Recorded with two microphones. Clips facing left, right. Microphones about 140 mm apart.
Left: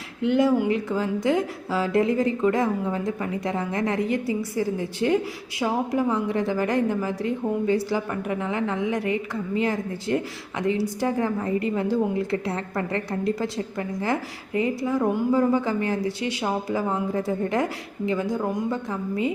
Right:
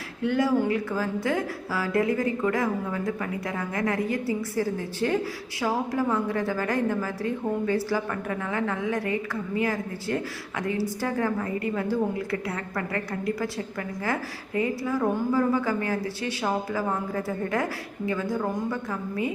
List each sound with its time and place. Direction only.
0.2 s a woman's voice: 20° left (ahead or behind)